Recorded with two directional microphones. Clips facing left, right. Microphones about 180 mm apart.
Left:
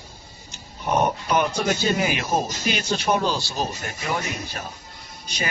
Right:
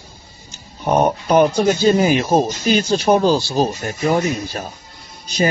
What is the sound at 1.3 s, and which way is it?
Speech, 35° right (ahead or behind).